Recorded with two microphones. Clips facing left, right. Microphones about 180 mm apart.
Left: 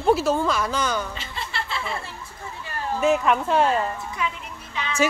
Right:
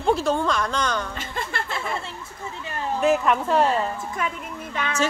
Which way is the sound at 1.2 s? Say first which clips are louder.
Right 2 dB; 50° right (ahead or behind).